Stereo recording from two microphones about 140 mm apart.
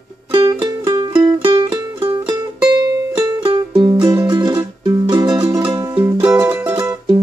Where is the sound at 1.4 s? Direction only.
40° right (ahead or behind); by 5.6 s 20° right (ahead or behind).